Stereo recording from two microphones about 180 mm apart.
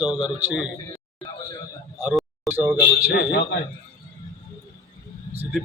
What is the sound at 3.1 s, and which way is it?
Speech, 65° left (ahead or behind).